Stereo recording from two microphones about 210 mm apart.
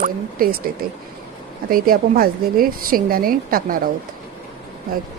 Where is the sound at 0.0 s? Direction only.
45° right (ahead or behind).